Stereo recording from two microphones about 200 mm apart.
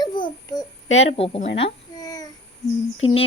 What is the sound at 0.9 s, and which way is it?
Speech, 75° left (ahead or behind).